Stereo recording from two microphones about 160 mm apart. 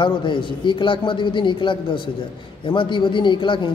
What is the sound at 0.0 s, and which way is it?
A man's voice, 30° left (ahead or behind).